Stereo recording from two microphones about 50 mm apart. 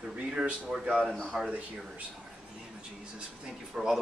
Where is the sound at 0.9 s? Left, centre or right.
Centre.